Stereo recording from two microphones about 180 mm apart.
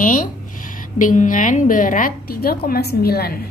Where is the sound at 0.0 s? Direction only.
50° left (ahead or behind).